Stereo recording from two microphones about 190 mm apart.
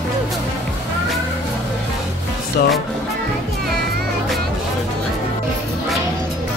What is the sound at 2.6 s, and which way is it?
Music, 55° left (ahead or behind).